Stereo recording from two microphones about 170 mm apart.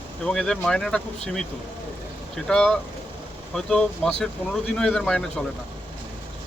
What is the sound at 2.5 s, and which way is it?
Speech, 5° left (ahead or behind).